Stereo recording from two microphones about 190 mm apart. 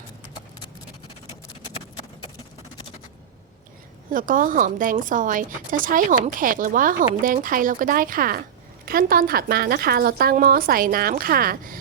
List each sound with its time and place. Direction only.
4.1 s a woman's voice: 45° right (ahead or behind)